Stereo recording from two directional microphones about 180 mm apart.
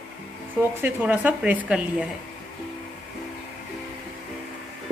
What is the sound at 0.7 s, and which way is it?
Speech, 10° right (ahead or behind).